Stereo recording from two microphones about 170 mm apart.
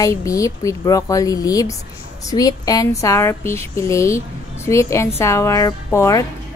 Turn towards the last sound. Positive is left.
turn(degrees=15)  # may be behind; listen again after turning